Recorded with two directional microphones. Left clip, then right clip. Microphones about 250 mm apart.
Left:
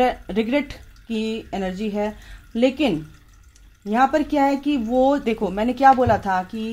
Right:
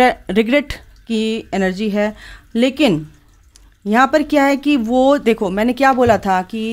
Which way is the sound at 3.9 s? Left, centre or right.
Right.